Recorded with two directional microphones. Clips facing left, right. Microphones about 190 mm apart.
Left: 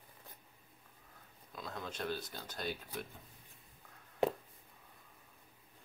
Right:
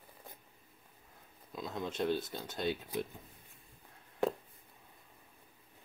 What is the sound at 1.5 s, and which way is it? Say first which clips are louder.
Speech: right 5 dB; 20° right (ahead or behind).